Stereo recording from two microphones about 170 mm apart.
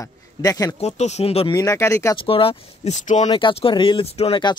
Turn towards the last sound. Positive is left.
turn(degrees=35)  # may be behind; listen again after turning